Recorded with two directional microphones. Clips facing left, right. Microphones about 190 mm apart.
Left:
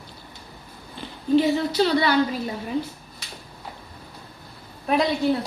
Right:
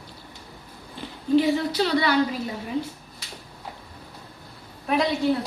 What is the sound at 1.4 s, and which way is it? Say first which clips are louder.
Speech: left 2 dB; 30° left (ahead or behind).